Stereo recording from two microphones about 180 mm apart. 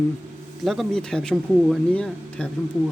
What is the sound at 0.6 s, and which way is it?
Speech, centre (ahead or behind).